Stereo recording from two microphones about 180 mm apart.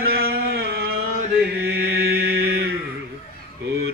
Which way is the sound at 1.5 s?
65° right (ahead or behind).